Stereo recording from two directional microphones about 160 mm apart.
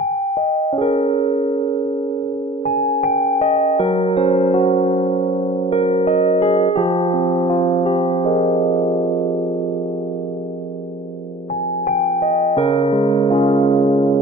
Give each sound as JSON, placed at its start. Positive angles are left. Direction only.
{"t": 0.0, "sound": "electric piano", "side_deg": 50}
{"t": 2.7, "sound": "music", "side_deg": 50}
{"t": 11.9, "sound": "music", "side_deg": 50}